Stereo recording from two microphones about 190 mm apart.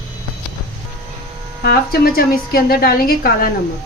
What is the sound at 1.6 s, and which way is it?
A woman's voice, 50° left (ahead or behind).